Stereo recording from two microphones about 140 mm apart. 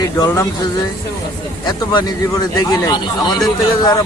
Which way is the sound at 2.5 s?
25° left (ahead or behind).